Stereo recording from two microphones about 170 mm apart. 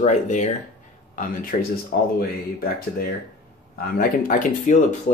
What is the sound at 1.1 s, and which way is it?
Speech, 55° left (ahead or behind).